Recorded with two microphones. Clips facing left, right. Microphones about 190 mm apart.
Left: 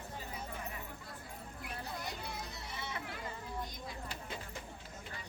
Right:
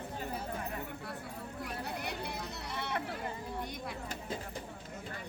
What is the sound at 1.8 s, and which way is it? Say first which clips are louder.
Chatter: right 3 dB; 65° right (ahead or behind).